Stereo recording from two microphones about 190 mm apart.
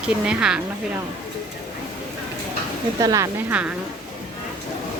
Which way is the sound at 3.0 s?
15° right (ahead or behind).